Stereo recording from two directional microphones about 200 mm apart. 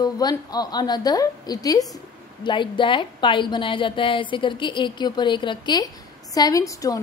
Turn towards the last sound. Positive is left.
turn(degrees=15)  # may be behind; listen again after turning